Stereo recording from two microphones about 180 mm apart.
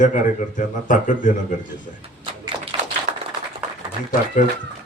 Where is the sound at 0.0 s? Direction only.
45° left (ahead or behind).